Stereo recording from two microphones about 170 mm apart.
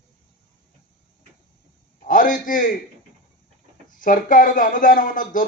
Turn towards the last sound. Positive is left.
turn(degrees=50)  # may be behind; listen again after turning